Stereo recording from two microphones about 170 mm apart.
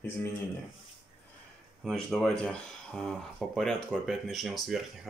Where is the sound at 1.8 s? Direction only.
Centre (ahead or behind).